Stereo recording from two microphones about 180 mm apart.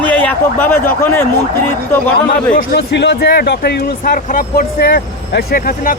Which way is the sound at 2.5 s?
65° left (ahead or behind).